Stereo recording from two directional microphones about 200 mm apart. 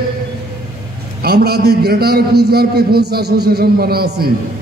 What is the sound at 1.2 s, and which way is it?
A man's voice, 50° right (ahead or behind).